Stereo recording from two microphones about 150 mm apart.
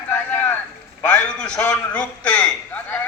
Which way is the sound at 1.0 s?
10° left (ahead or behind).